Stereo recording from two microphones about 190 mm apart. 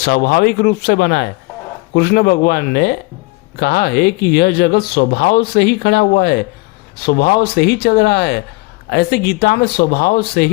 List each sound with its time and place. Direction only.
0.0 s speech: 55° left (ahead or behind)